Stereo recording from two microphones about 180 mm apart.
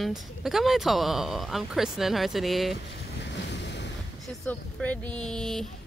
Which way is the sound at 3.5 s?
70° left (ahead or behind).